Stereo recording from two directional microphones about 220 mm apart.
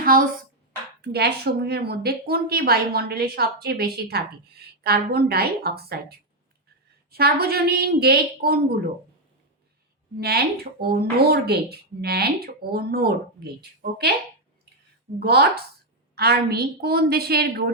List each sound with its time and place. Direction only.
0.0 s speech: 40° right (ahead or behind)
10.2 s speech: 45° right (ahead or behind)
15.2 s speech: 45° right (ahead or behind)